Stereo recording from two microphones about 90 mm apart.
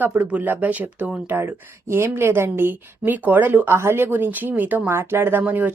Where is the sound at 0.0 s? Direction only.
20° right (ahead or behind).